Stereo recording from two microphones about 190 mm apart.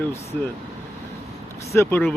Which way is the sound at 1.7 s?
10° left (ahead or behind).